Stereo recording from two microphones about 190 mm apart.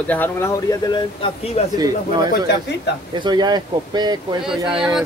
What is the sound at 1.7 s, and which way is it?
Speech, 20° right (ahead or behind).